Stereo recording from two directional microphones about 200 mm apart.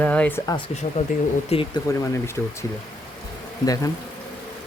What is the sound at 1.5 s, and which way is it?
Speech, 25° left (ahead or behind).